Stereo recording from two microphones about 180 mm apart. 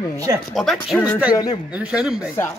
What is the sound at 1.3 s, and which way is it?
Speech, 20° left (ahead or behind).